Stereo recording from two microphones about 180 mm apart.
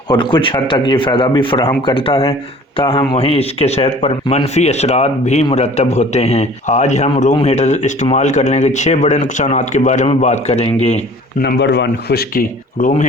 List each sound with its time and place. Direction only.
0.1 s a man's voice: 25° left (ahead or behind)
11.3 s speech: 65° left (ahead or behind)